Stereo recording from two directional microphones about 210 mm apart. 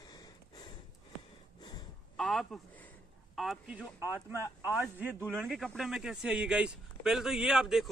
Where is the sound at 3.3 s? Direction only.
Centre (ahead or behind).